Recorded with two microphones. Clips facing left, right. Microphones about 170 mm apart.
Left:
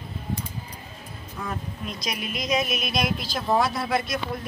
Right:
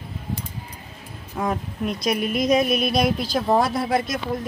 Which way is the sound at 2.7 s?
35° right (ahead or behind).